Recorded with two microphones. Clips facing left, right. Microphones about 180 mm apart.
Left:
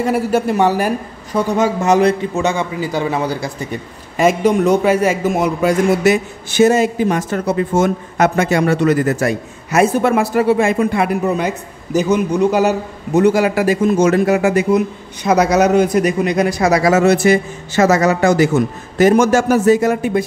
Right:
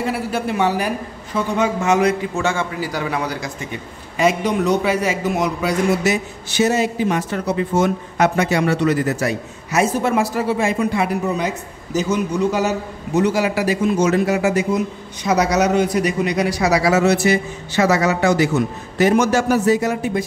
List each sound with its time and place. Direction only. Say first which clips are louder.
0.0 s a man's voice: left 6 dB; 45° left (ahead or behind)
2.3 s a man's voice: left 3 dB; 20° left (ahead or behind); by 20.2 s 55° left (ahead or behind)